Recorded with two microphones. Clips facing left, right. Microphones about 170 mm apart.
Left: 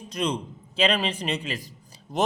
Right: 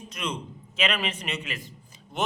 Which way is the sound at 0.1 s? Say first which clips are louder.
Left 6 dB; 35° left (ahead or behind).